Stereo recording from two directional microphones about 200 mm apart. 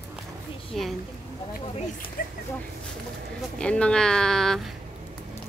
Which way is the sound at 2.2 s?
45° left (ahead or behind).